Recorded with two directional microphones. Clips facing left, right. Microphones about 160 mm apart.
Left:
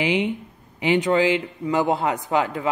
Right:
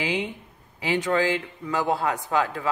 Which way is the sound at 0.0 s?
20° left (ahead or behind).